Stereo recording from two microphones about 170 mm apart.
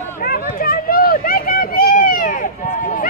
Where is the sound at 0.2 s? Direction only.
60° left (ahead or behind).